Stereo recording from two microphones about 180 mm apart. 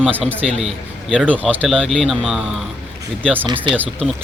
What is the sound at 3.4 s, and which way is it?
Speech, 25° right (ahead or behind).